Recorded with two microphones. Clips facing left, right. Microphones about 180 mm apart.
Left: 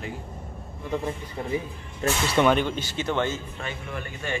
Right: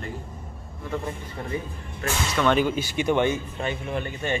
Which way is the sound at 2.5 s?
10° right (ahead or behind).